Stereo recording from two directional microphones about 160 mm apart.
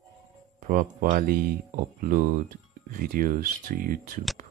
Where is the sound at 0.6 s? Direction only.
55° right (ahead or behind).